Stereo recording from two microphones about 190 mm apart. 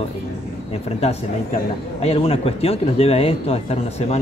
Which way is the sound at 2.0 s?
30° left (ahead or behind).